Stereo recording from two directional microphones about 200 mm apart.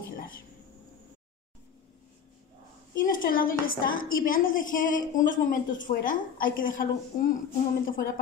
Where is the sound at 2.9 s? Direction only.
45° left (ahead or behind).